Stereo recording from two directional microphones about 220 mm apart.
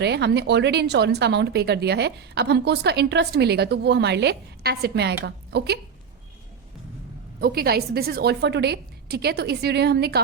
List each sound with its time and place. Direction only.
0.0 s a woman's voice: 50° right (ahead or behind)
7.4 s speech: 45° right (ahead or behind)